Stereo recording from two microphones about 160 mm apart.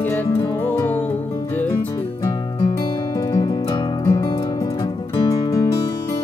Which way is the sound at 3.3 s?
25° left (ahead or behind).